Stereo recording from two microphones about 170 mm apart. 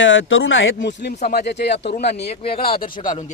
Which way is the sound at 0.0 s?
90° left.